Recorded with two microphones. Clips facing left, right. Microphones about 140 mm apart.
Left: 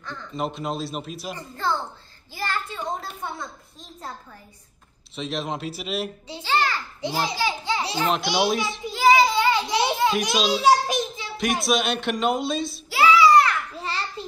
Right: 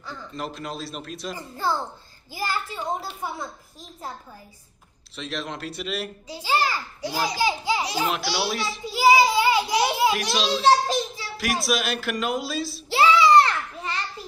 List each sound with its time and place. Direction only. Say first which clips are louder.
0.0 s speech: left 4 dB; 5° right (ahead or behind)
2.3 s speech: even; 10° right (ahead or behind)
5.1 s speech: left 3 dB; centre (ahead or behind)
6.4 s child singing: even; 10° right (ahead or behind)
7.0 s a child's voice: left 1 dB; 20° left (ahead or behind)
7.3 s child singing: right 2 dB; 15° right (ahead or behind)
7.9 s speech: left 2 dB; 5° right (ahead or behind)
8.9 s child singing: even; 10° right (ahead or behind)
10.2 s a child's voice: left 1 dB; 10° left (ahead or behind)
11.6 s speech: left 3 dB; centre (ahead or behind)
12.9 s child singing: even; 25° right (ahead or behind)
13.7 s a sound: left 1 dB; 30° left (ahead or behind)